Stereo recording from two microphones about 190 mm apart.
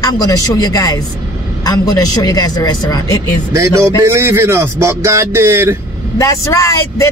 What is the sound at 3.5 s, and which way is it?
Speech, 15° right (ahead or behind).